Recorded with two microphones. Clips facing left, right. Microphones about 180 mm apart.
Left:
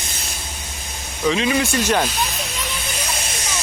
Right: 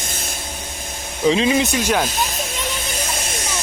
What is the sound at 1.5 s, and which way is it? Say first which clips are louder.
Speech: right 1 dB; 20° right (ahead or behind).